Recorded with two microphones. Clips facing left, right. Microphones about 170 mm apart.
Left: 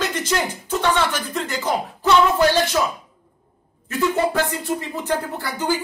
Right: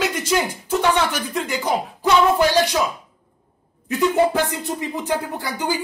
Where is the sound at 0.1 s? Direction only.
10° right (ahead or behind).